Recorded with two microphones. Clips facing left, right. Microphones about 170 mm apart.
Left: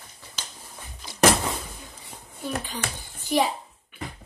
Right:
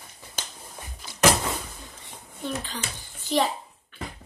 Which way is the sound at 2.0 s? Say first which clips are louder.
Right 1 dB; 10° left (ahead or behind).